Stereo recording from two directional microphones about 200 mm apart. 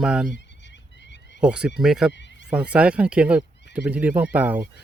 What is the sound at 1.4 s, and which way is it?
Speech, 5° right (ahead or behind).